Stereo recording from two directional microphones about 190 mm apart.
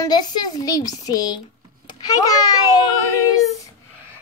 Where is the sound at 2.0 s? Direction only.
20° left (ahead or behind).